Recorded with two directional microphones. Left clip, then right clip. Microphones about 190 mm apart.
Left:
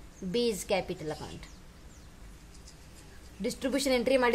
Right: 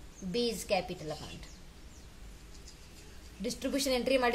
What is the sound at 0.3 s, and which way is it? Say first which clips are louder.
Speech: left 2 dB; 35° left (ahead or behind).